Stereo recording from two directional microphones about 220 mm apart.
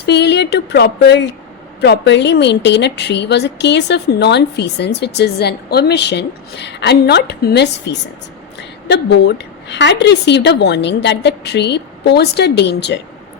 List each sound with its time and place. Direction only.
0.0 s a woman's voice: 50° left (ahead or behind)